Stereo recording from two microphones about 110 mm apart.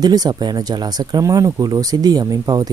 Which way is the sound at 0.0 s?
35° right (ahead or behind).